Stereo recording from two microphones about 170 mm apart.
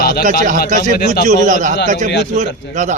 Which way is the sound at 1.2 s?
50° right (ahead or behind).